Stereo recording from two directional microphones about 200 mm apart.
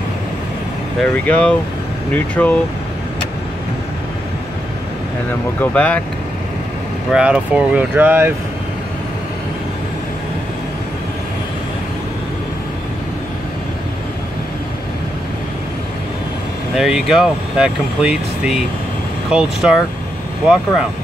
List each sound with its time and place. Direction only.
1.0 s speech: 5° left (ahead or behind)
5.6 s speech: 5° left (ahead or behind)
7.1 s speech: 5° right (ahead or behind)
16.7 s speech: 5° right (ahead or behind)